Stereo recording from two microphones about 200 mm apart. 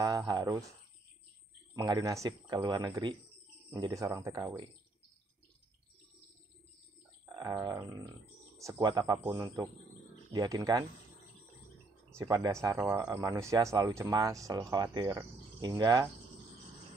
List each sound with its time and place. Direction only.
0.0 s speech: 20° right (ahead or behind)
7.3 s speech: 20° right (ahead or behind)
12.2 s speech: 15° right (ahead or behind)